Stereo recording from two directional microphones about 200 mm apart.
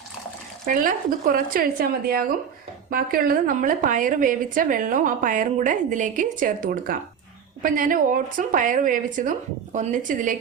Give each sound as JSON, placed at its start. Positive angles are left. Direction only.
{"t": 0.6, "sound": "a woman's voice", "side_deg": -45}